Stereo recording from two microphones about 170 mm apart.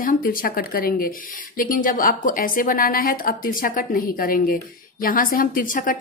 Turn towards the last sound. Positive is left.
turn(degrees=50)  # may be behind; listen again after turning